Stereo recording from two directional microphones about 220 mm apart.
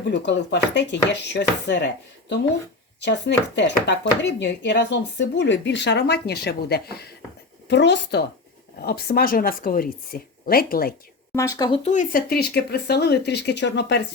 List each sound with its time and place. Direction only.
0.1 s speech: 50° left (ahead or behind)
3.0 s speech: 50° left (ahead or behind)
11.3 s speech: 15° left (ahead or behind); by 14.0 s 50° left (ahead or behind)